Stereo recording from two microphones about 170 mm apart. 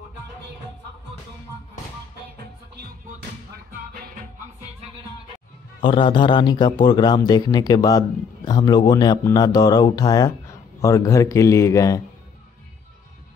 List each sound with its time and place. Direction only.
3.5 s music: 60° right (ahead or behind)
5.9 s a man's voice: 30° left (ahead or behind)